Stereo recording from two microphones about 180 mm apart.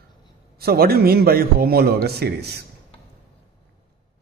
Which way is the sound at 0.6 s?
60° right (ahead or behind).